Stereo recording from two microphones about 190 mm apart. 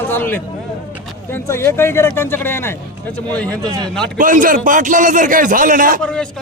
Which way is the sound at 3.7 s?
20° right (ahead or behind).